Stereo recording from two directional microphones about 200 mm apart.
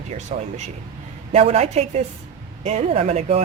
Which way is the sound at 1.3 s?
35° right (ahead or behind).